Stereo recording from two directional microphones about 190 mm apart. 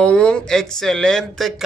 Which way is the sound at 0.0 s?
5° left (ahead or behind).